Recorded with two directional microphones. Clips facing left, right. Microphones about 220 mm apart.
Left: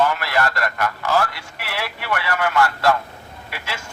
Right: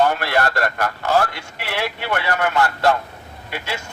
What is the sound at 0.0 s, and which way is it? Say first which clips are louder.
A man's voice: right 2 dB; 35° right (ahead or behind).